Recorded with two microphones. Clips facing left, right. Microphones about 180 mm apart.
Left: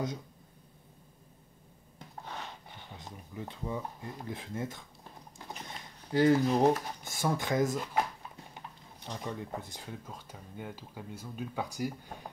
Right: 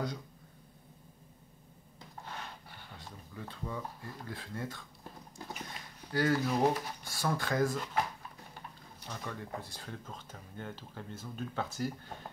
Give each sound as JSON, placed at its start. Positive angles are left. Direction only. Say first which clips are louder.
{"t": 3.0, "sound": "speech", "louder": "left 4 dB", "side_deg": 20}
{"t": 6.1, "sound": "speech", "louder": "left 5 dB", "side_deg": 20}